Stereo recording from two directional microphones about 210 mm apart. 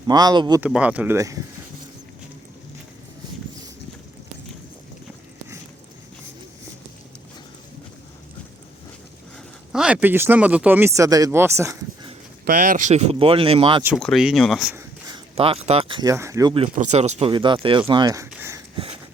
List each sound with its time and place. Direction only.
0.1 s speech: 20° right (ahead or behind)
0.6 s speech: 5° right (ahead or behind)
9.7 s speech: 5° right (ahead or behind)
12.5 s speech: 40° right (ahead or behind); by 13.8 s 25° right (ahead or behind)
13.8 s speech: centre (ahead or behind)
15.4 s speech: 30° right (ahead or behind)
16.7 s speech: 35° right (ahead or behind); by 18.3 s 15° right (ahead or behind)
18.3 s a sound: 10° right (ahead or behind)